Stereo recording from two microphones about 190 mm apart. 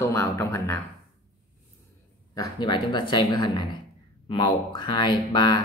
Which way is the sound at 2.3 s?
25° left (ahead or behind).